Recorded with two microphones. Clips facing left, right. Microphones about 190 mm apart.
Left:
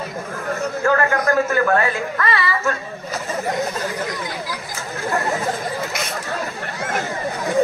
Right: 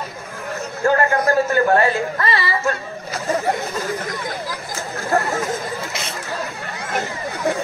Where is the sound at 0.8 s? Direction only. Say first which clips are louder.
Right 2 dB; 30° right (ahead or behind).